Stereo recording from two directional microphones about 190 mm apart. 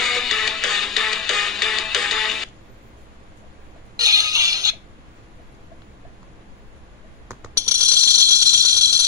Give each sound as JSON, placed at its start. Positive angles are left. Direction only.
{"t": 0.0, "sound": "music", "side_deg": 0}
{"t": 3.9, "sound": "music", "side_deg": -20}
{"t": 7.2, "sound": "rattle", "side_deg": -15}